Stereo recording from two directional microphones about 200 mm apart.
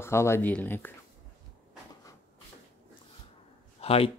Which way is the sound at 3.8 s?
30° left (ahead or behind).